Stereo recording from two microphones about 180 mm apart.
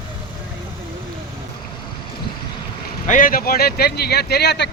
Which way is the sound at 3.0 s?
50° left (ahead or behind).